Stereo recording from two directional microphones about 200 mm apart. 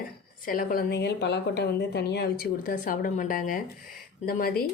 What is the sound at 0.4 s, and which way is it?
A woman's voice, 45° left (ahead or behind).